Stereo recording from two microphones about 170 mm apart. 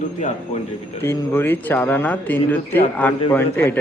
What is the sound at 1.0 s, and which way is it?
Speech, 15° left (ahead or behind).